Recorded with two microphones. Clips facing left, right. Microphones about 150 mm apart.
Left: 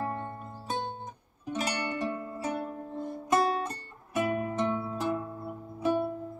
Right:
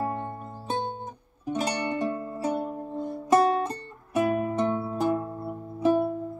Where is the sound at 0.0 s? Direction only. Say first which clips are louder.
Right 4 dB; 25° right (ahead or behind).